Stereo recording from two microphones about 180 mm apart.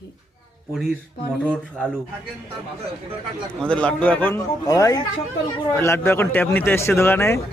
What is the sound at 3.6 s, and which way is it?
A man's voice, 5° left (ahead or behind).